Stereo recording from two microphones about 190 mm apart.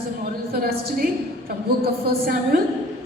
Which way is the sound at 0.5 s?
50° right (ahead or behind).